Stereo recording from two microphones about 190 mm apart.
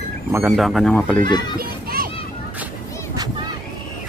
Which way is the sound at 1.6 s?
50° right (ahead or behind).